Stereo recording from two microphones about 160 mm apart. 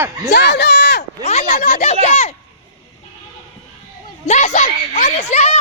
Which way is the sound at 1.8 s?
45° left (ahead or behind).